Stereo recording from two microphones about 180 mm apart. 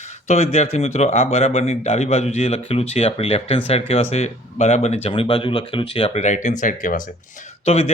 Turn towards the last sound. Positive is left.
turn(degrees=35)  # may be behind; listen again after turning